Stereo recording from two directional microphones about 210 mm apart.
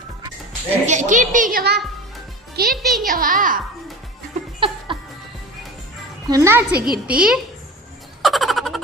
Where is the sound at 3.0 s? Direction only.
40° right (ahead or behind).